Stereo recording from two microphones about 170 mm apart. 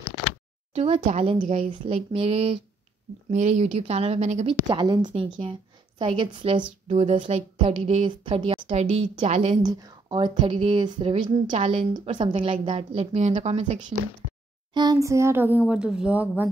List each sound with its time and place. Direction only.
0.7 s a woman's voice: 35° right (ahead or behind)
4.6 s a woman's voice: 25° right (ahead or behind)
9.6 s a woman's voice: 25° right (ahead or behind)
14.7 s speech: 25° right (ahead or behind); by 16.4 s 10° right (ahead or behind)